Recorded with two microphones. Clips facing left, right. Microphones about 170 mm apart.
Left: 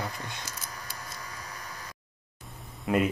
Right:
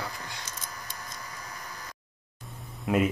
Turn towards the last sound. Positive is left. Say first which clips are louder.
# even
turn(degrees=0)  # may be behind; listen again after turning